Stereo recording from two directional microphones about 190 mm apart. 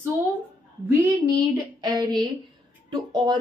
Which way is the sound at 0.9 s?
15° right (ahead or behind).